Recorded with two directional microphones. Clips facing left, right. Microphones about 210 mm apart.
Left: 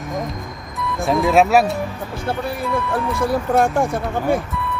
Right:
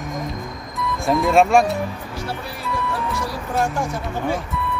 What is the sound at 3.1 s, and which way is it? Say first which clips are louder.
Speech: left 7 dB; 55° left (ahead or behind).